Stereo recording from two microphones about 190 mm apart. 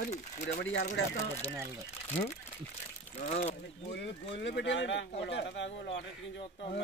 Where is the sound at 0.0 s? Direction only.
40° left (ahead or behind).